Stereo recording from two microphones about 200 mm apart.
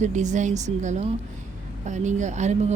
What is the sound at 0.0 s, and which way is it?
Speech, 35° right (ahead or behind).